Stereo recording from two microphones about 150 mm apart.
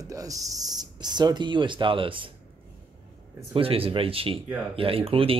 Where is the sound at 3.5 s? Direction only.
40° right (ahead or behind).